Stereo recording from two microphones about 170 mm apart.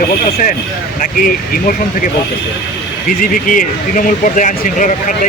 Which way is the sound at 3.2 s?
50° left (ahead or behind).